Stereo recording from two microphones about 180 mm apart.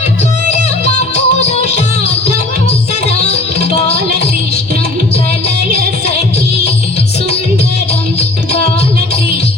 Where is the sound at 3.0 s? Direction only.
35° left (ahead or behind).